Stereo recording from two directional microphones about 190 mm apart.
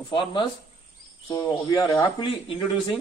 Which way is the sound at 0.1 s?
25° left (ahead or behind).